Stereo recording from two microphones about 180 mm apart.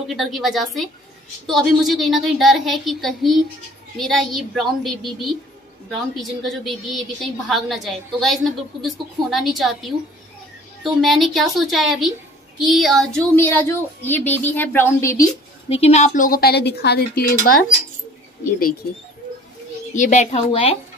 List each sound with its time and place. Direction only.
0.1 s a woman's voice: centre (ahead or behind); by 15.2 s 15° left (ahead or behind)
15.7 s a woman's voice: 35° left (ahead or behind); by 17.4 s 60° left (ahead or behind)
20.0 s a woman's voice: 40° left (ahead or behind)